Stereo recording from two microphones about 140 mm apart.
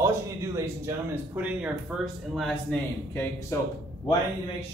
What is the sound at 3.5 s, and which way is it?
Speech, 20° left (ahead or behind).